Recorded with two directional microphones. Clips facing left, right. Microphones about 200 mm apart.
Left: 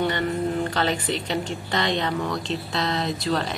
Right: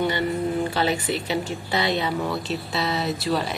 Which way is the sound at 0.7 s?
10° right (ahead or behind).